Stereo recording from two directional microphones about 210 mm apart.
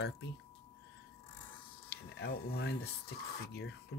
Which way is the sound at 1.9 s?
50° left (ahead or behind).